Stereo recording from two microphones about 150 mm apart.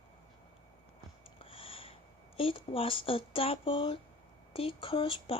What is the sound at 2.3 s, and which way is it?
Speech, 35° left (ahead or behind).